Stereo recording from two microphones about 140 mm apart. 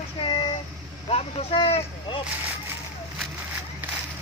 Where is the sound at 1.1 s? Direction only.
45° left (ahead or behind).